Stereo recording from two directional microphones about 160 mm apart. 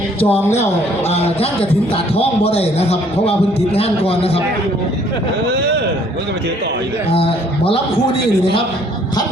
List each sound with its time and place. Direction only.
0.3 s speech: 15° left (ahead or behind)
2.1 s a man's voice: 40° left (ahead or behind)
7.1 s a man's voice: 35° left (ahead or behind)